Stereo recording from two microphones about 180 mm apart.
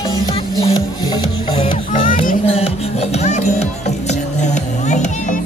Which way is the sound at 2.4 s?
30° left (ahead or behind).